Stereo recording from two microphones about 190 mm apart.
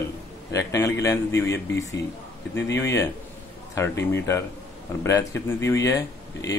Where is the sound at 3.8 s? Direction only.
15° left (ahead or behind).